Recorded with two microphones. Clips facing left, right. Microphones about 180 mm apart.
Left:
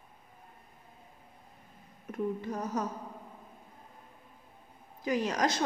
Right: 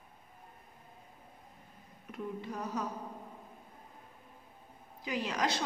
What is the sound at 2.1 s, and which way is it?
Speech, 45° left (ahead or behind).